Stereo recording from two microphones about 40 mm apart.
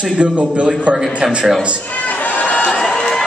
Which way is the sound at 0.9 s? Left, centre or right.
Centre.